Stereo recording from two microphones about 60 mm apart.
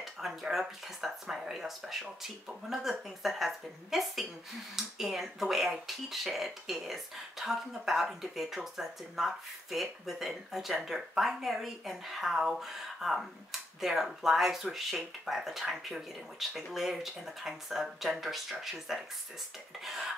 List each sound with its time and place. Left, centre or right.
0.0 s speech: centre